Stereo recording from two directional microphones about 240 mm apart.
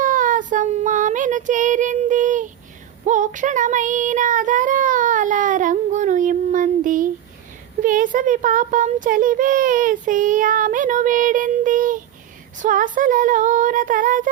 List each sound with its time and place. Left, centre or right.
0.0 s child singing: right
7.8 s a child's voice: right
12.5 s a sound: right